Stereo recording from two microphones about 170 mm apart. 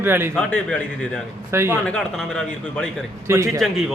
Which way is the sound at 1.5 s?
15° right (ahead or behind).